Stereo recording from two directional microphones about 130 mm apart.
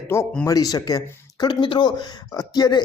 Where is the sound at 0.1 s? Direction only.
20° left (ahead or behind).